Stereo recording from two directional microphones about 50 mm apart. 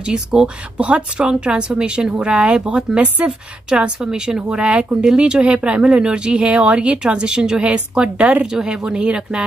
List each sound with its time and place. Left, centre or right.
0.0 s speech: centre